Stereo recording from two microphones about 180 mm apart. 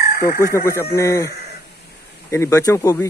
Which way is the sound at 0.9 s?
15° left (ahead or behind).